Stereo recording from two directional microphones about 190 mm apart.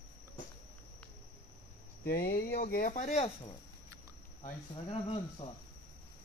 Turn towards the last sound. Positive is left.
turn(degrees=30)  # may be behind; listen again after turning